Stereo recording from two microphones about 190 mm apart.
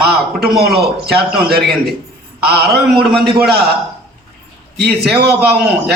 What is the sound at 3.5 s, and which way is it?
Speech, 55° right (ahead or behind).